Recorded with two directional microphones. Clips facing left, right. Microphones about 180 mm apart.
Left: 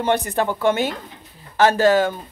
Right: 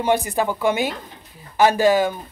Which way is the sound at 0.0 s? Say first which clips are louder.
Even; 10° right (ahead or behind).